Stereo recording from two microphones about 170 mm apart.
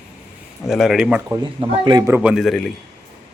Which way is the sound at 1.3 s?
25° right (ahead or behind).